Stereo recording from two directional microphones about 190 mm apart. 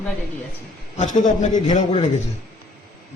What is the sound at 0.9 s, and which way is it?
A man's voice, 40° left (ahead or behind).